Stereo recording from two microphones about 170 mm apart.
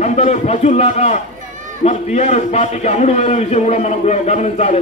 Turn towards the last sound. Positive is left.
turn(degrees=40)  # may be behind; listen again after turning